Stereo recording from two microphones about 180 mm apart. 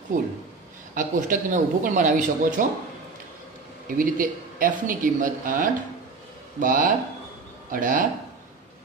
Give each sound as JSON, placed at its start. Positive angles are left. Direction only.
{"t": 0.1, "sound": "speech", "side_deg": -45}
{"t": 3.8, "sound": "speech", "side_deg": -50}